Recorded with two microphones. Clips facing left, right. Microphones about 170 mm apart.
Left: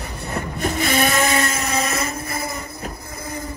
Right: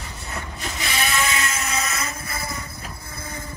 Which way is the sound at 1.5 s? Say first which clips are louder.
Left 5 dB; 30° left (ahead or behind).